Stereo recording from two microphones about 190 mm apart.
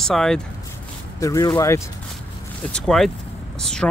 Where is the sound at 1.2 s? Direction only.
15° left (ahead or behind).